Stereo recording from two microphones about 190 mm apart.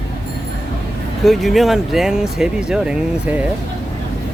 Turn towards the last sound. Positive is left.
turn(degrees=-5)  # may be behind; listen again after turning